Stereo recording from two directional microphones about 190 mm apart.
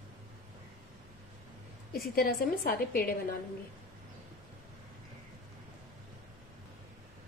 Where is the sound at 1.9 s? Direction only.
50° left (ahead or behind).